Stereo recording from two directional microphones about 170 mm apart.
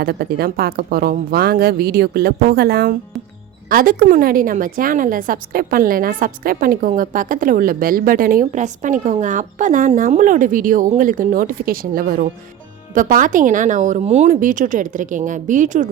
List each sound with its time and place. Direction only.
0.0 s a woman's voice: 65° right (ahead or behind); by 15.9 s 50° right (ahead or behind)